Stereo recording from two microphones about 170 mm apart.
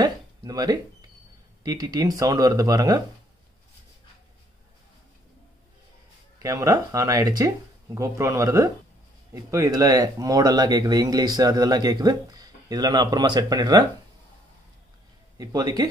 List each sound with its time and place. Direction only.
0.0 s a sound: 25° right (ahead or behind)
1.6 s speech: 20° right (ahead or behind)
6.4 s speech: 20° right (ahead or behind)
15.3 s speech: 20° right (ahead or behind)